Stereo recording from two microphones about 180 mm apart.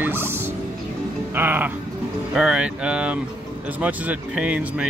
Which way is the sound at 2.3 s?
5° right (ahead or behind).